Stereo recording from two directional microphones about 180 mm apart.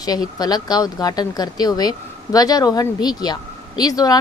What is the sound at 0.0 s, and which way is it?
Speech, 20° left (ahead or behind).